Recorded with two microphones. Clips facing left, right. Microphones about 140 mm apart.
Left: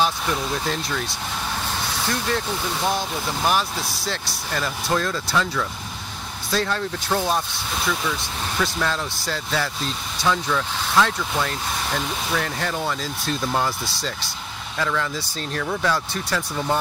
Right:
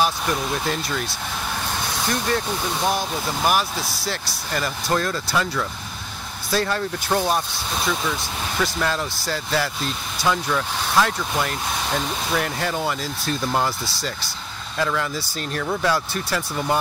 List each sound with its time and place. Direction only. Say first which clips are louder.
0.0 s speech: right 1 dB; 5° right (ahead or behind)
3.4 s speech: right 1 dB; 5° right (ahead or behind)
8.5 s speech: right 1 dB; 5° right (ahead or behind)
14.8 s speech: right 1 dB; 10° right (ahead or behind)